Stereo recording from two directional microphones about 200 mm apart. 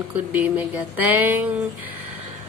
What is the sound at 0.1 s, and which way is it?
Speech, 10° right (ahead or behind).